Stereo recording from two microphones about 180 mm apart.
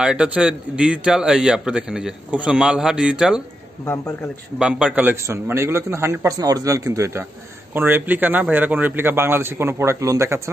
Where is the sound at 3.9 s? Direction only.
15° left (ahead or behind).